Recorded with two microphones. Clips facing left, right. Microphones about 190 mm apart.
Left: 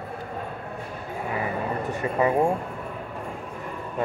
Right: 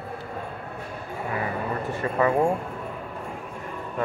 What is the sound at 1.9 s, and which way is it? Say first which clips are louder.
Speech: even; 20° left (ahead or behind).